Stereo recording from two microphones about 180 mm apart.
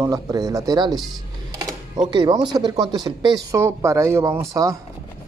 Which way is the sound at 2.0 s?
25° right (ahead or behind).